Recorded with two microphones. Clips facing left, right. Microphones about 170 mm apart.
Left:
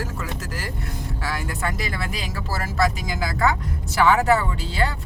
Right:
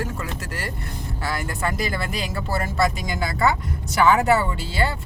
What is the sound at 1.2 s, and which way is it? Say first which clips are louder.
Speech: right 2 dB; centre (ahead or behind).